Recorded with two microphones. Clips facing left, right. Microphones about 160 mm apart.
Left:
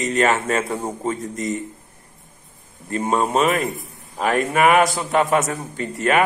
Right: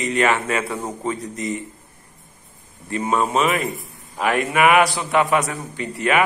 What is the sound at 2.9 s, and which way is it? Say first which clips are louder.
A man's voice: left 1 dB; 40° left (ahead or behind).